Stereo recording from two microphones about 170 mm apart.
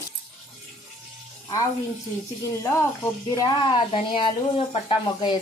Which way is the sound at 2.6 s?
15° left (ahead or behind).